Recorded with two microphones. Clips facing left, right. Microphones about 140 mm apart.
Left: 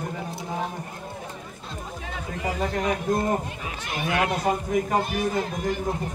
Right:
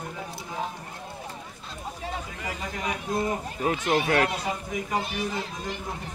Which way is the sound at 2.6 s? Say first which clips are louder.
Left 7 dB; 50° left (ahead or behind).